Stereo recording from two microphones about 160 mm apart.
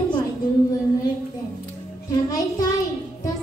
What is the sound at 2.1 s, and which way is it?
Music, 25° left (ahead or behind).